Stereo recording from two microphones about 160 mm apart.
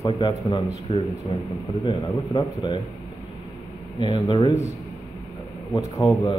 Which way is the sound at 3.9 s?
30° left (ahead or behind).